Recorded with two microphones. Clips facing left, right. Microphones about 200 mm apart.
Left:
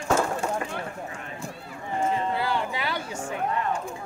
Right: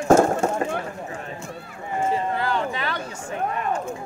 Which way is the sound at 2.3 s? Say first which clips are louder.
Right 2 dB; 10° left (ahead or behind).